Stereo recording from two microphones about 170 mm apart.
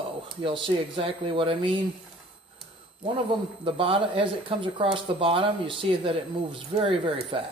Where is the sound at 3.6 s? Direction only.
30° right (ahead or behind).